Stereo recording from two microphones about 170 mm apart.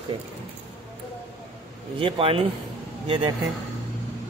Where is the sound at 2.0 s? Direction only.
35° right (ahead or behind).